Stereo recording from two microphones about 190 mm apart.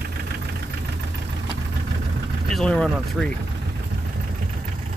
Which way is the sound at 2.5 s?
5° left (ahead or behind).